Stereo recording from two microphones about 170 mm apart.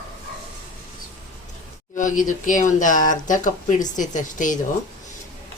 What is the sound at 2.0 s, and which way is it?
Speech, 50° left (ahead or behind).